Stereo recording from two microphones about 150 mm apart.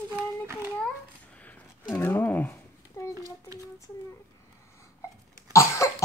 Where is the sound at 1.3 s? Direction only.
10° left (ahead or behind).